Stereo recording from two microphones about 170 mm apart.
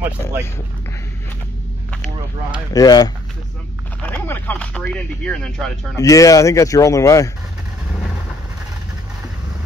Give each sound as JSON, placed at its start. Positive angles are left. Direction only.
{"t": 2.7, "sound": "speech", "side_deg": 20}
{"t": 4.0, "sound": "speech", "side_deg": 10}
{"t": 5.9, "sound": "speech", "side_deg": 20}